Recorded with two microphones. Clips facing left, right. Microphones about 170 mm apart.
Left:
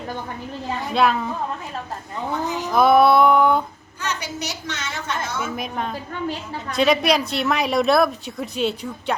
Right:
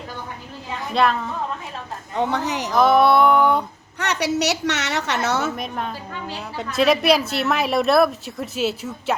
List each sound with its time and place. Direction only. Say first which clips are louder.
0.9 s a woman's voice: even; 5° left (ahead or behind)
2.1 s a woman's voice: right 3 dB; 75° right (ahead or behind)
2.7 s a woman's voice: left 1 dB; centre (ahead or behind)
4.0 s a woman's voice: right 7 dB; 75° right (ahead or behind)
5.5 s a woman's voice: left 1 dB; centre (ahead or behind)